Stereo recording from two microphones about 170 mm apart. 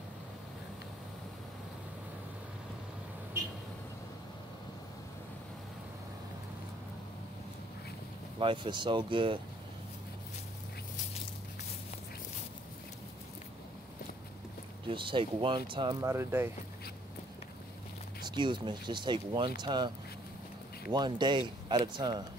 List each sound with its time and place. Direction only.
8.4 s speech: 30° right (ahead or behind)
14.9 s speech: 30° right (ahead or behind)
16.0 s speech: 15° right (ahead or behind)
18.2 s speech: 25° right (ahead or behind)
20.9 s speech: 25° right (ahead or behind)